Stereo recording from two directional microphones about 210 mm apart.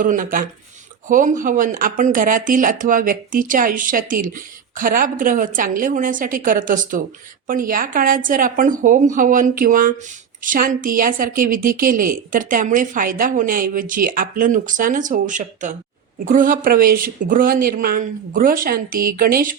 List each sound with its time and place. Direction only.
0.0 s speech: 40° right (ahead or behind)